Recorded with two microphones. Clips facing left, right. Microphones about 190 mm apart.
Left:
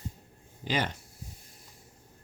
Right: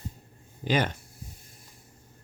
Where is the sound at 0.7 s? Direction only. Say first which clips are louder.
Right 4 dB; 50° right (ahead or behind).